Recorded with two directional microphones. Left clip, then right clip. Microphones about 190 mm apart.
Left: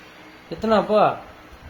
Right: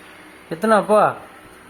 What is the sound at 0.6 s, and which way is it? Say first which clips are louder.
Speech: right 3 dB; 30° right (ahead or behind).